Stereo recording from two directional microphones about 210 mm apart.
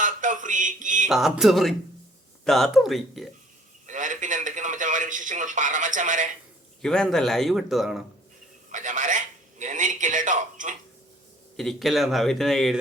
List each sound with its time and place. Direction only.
0.0 s a sound: 40° right (ahead or behind)
1.0 s speech: centre (ahead or behind)
3.8 s a man's voice: 35° right (ahead or behind)
6.8 s speech: 5° left (ahead or behind)
8.7 s a man's voice: 35° right (ahead or behind)
11.5 s speech: centre (ahead or behind)